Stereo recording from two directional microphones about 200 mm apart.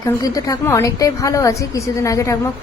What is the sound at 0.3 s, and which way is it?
A woman's voice, 15° left (ahead or behind).